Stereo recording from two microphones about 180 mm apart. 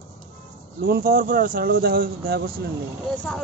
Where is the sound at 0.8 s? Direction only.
55° right (ahead or behind).